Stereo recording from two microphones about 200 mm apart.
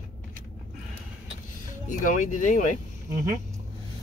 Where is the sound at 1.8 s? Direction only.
40° left (ahead or behind).